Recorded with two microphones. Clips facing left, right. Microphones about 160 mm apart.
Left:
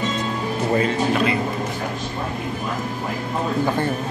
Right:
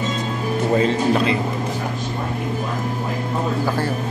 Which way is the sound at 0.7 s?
30° right (ahead or behind).